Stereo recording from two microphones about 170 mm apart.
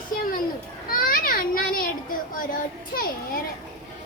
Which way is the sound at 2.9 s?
55° left (ahead or behind).